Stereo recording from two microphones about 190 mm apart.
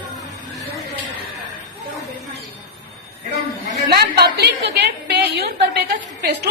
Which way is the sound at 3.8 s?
55° right (ahead or behind).